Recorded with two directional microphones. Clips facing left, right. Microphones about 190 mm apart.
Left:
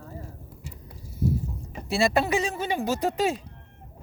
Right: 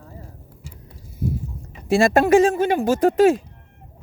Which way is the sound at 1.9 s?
45° right (ahead or behind).